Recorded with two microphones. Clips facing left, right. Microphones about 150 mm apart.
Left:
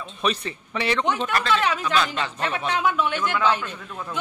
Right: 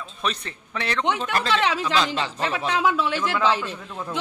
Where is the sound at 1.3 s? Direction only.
30° right (ahead or behind).